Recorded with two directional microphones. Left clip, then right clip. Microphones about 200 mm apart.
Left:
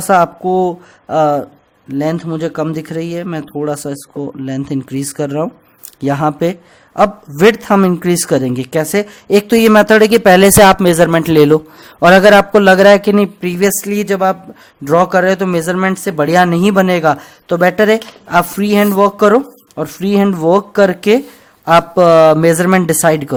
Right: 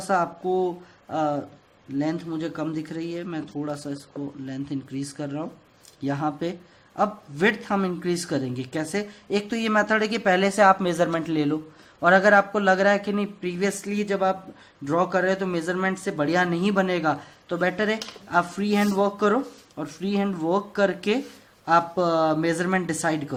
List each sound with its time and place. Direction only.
0.1 s a man's voice: 50° left (ahead or behind)